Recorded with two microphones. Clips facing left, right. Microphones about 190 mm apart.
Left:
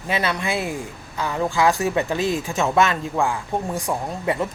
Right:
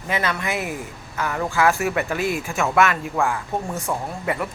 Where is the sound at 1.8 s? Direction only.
25° left (ahead or behind).